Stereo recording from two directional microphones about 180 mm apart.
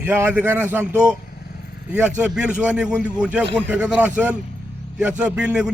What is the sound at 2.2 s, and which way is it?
A man's voice, 5° right (ahead or behind).